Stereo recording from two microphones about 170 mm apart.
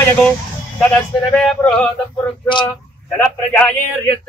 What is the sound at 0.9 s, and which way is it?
Speech, 5° left (ahead or behind).